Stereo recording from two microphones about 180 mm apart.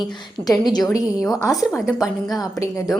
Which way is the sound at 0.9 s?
5° right (ahead or behind).